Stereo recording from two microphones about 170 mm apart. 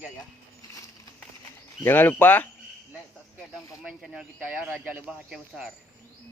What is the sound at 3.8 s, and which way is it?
Speech, 5° right (ahead or behind).